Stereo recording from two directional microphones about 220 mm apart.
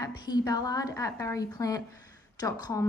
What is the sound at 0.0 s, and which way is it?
A woman's voice, 20° left (ahead or behind).